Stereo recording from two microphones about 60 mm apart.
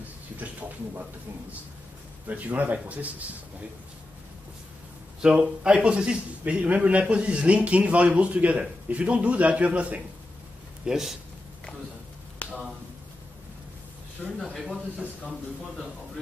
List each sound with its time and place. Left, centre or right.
0.4 s a sound: right
2.2 s a man's voice: right
5.2 s a man's voice: centre
10.9 s speech: centre
14.4 s speech: centre